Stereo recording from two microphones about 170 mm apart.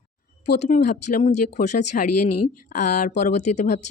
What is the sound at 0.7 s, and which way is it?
Speech, 50° left (ahead or behind).